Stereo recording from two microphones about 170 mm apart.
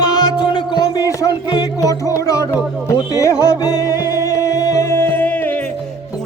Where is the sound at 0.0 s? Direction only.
25° left (ahead or behind).